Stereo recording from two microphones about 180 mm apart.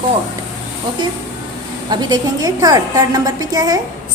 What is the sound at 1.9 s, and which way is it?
A woman's voice, 25° right (ahead or behind).